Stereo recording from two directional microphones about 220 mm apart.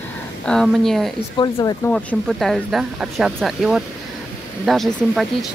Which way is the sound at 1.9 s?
Centre (ahead or behind).